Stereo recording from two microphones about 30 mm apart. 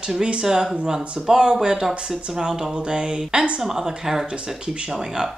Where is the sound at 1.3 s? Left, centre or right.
Right.